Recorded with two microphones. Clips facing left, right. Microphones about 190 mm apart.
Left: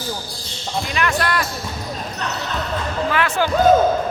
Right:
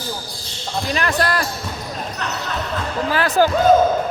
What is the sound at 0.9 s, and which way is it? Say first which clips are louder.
Speech: right 1 dB; 35° right (ahead or behind).